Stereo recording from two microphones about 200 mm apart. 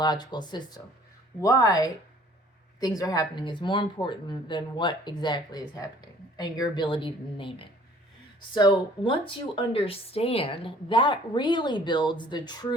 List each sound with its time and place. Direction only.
0.0 s speech: 20° left (ahead or behind)